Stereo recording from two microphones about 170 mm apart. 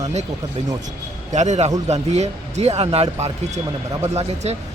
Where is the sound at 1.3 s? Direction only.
45° right (ahead or behind).